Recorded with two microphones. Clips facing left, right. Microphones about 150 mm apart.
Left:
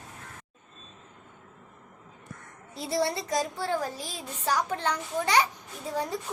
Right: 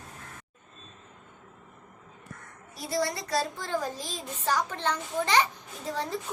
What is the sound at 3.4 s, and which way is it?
A child's voice, 10° left (ahead or behind).